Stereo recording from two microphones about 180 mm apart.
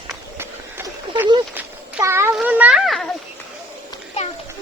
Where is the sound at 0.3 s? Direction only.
10° right (ahead or behind).